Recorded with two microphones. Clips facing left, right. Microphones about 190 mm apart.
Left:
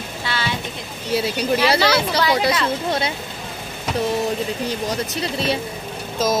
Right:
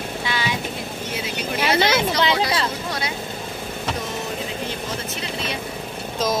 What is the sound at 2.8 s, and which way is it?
Speech, 25° left (ahead or behind).